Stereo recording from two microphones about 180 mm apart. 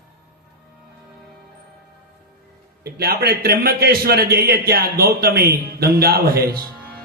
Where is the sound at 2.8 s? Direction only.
60° right (ahead or behind).